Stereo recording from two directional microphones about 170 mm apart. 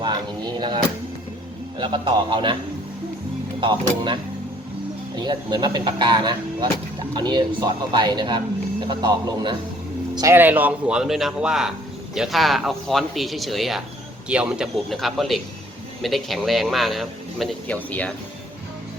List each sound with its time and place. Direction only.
1.8 s speech: 30° right (ahead or behind)
3.6 s speech: 30° right (ahead or behind)
10.2 s a man's voice: 15° right (ahead or behind); by 18.1 s 10° left (ahead or behind)